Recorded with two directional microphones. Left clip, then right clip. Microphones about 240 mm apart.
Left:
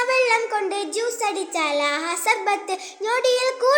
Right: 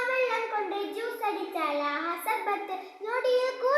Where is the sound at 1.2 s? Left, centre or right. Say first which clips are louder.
Left 4 dB; left.